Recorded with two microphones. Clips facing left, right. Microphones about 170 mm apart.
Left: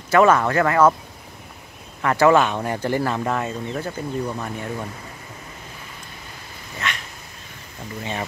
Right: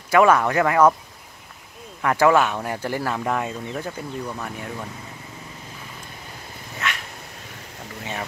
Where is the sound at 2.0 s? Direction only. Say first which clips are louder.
Left 2 dB; 5° right (ahead or behind).